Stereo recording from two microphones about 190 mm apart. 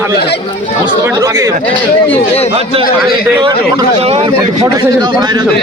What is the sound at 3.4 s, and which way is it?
Speech, 30° right (ahead or behind).